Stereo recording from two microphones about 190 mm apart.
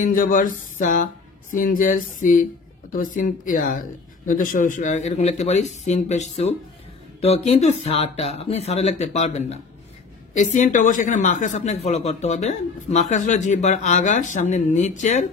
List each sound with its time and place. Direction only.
0.0 s speech: 45° left (ahead or behind)